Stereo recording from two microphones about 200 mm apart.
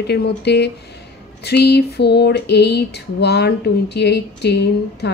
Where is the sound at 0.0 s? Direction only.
55° left (ahead or behind).